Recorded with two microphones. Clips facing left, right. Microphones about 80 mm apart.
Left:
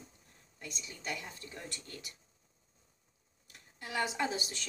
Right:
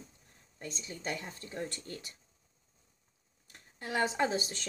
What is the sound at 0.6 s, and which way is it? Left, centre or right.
A woman's voice, right.